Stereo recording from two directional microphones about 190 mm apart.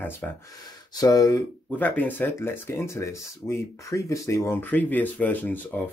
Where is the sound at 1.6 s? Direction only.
10° left (ahead or behind).